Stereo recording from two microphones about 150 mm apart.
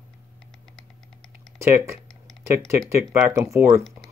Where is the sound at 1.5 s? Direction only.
20° right (ahead or behind).